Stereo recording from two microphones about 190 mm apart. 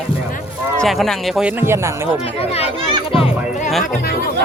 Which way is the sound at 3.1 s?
30° left (ahead or behind).